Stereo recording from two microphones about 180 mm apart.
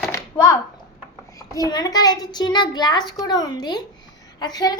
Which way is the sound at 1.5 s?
20° left (ahead or behind).